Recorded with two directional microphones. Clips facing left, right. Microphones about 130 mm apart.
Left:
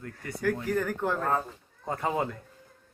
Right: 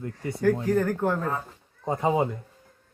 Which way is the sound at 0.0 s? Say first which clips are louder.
Right 6 dB; 20° right (ahead or behind).